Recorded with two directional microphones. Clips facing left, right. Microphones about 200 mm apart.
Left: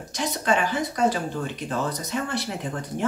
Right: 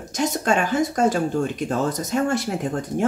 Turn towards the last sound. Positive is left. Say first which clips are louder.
# right 5 dB
turn(degrees=-45)  # may be behind; listen again after turning